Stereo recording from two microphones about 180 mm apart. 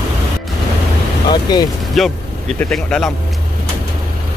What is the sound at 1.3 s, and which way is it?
Vehicle, 25° left (ahead or behind).